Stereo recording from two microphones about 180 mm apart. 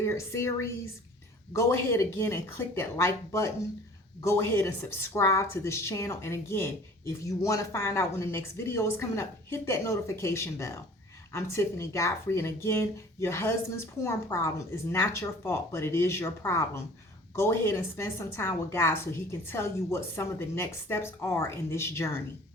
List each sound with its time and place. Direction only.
0.0 s a woman's voice: 15° left (ahead or behind)